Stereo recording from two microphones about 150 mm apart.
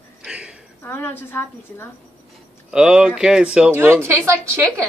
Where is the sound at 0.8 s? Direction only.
15° left (ahead or behind).